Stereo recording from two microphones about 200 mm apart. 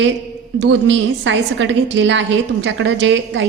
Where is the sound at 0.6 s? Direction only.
65° right (ahead or behind).